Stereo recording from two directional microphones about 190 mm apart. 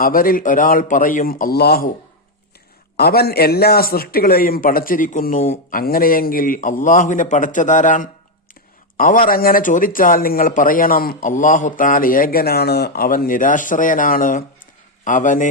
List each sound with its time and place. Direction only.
0.0 s speech: 50° left (ahead or behind)
3.0 s speech: 55° left (ahead or behind)